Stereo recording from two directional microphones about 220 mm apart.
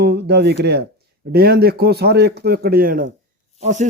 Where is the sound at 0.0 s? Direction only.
50° right (ahead or behind).